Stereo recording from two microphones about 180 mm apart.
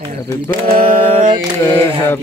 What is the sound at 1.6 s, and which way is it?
Mantra, 10° left (ahead or behind).